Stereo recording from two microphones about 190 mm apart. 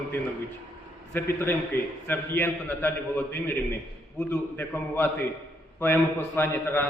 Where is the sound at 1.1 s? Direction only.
10° left (ahead or behind).